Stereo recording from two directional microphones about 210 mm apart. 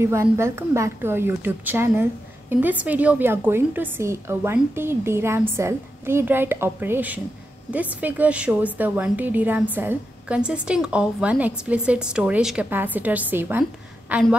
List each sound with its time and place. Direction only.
0.0 s a woman's voice: 10° right (ahead or behind)